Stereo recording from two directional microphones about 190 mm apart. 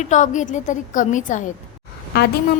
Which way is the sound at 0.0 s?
40° left (ahead or behind).